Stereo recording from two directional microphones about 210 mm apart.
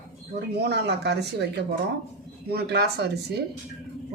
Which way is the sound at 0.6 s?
50° right (ahead or behind).